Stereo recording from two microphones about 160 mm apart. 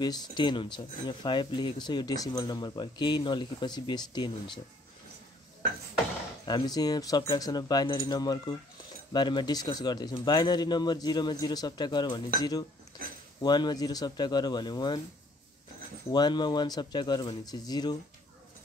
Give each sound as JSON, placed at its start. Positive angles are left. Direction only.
{"t": 0.0, "sound": "speech", "side_deg": 25}
{"t": 6.4, "sound": "speech", "side_deg": 25}
{"t": 16.1, "sound": "speech", "side_deg": 25}